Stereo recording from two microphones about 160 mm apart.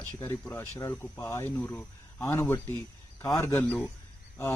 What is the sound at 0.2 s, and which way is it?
Speech, 15° left (ahead or behind).